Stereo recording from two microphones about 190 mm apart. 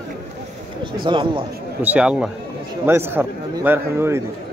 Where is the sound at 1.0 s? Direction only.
25° right (ahead or behind).